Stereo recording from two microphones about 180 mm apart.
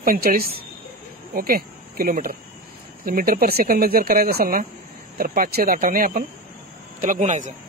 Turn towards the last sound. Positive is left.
turn(degrees=-40)  # may be behind; listen again after turning